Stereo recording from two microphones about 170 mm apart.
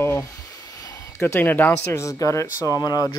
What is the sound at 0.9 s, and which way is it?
Speech, 15° left (ahead or behind).